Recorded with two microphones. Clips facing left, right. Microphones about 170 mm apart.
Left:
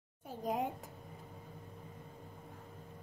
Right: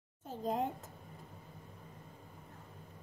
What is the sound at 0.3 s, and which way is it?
Speech, 10° left (ahead or behind).